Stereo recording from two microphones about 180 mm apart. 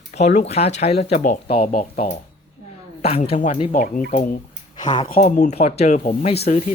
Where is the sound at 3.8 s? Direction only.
55° left (ahead or behind).